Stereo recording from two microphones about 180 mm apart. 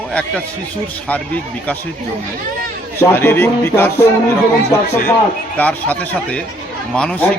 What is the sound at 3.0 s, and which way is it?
A man's voice, 15° left (ahead or behind).